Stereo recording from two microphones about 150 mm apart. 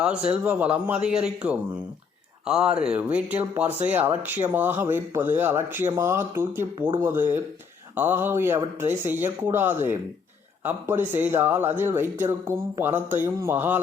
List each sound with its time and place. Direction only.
0.3 s speech: 10° right (ahead or behind)